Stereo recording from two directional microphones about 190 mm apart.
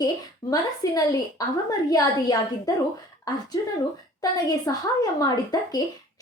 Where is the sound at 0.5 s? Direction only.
20° left (ahead or behind).